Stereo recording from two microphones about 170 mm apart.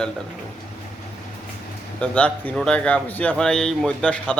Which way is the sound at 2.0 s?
10° left (ahead or behind).